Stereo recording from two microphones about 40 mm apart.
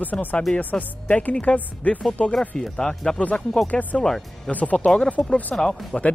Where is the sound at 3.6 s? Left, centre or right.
Left.